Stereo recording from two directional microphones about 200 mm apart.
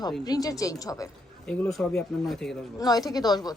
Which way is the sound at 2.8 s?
20° left (ahead or behind).